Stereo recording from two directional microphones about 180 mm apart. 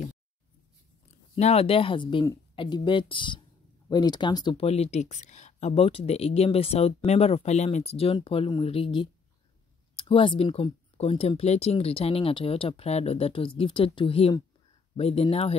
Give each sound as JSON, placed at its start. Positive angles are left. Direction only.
{"t": 1.3, "sound": "speech", "side_deg": 35}